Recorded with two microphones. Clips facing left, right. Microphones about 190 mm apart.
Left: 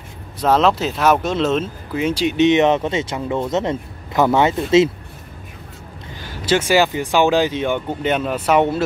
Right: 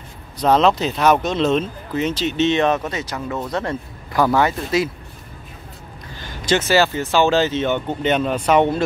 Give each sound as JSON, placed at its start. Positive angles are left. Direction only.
{"t": 0.4, "sound": "speech", "side_deg": 5}
{"t": 6.2, "sound": "speech", "side_deg": 5}